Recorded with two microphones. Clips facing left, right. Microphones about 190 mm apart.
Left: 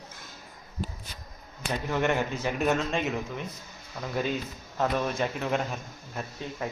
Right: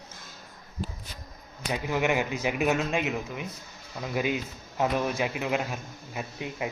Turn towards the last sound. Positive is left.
turn(degrees=-10)  # may be behind; listen again after turning